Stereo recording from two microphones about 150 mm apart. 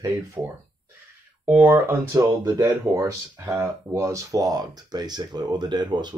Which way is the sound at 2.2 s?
25° right (ahead or behind).